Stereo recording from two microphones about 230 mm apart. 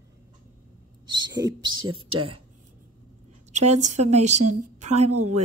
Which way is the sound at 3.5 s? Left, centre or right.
Right.